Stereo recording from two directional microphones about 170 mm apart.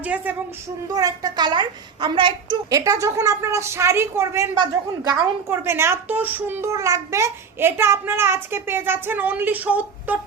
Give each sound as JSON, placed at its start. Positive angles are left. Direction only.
{"t": 0.0, "sound": "a child's voice", "side_deg": -10}
{"t": 0.9, "sound": "a child's voice", "side_deg": -20}
{"t": 4.5, "sound": "a child's voice", "side_deg": -25}
{"t": 5.5, "sound": "a child's voice", "side_deg": -15}